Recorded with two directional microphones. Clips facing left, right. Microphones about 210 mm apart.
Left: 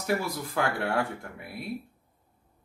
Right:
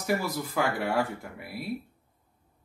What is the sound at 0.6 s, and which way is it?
Speech, 5° right (ahead or behind).